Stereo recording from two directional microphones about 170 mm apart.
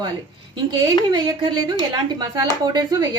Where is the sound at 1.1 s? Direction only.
25° right (ahead or behind).